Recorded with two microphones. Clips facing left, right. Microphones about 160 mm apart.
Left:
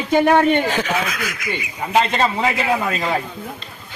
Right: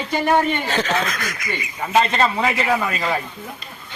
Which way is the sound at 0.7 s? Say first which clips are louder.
Even; 10° left (ahead or behind).